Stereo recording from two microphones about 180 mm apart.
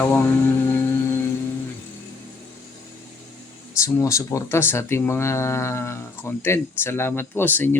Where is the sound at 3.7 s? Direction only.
15° left (ahead or behind).